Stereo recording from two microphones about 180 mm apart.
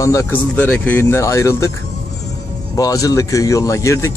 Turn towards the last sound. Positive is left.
turn(degrees=15)  # may be behind; listen again after turning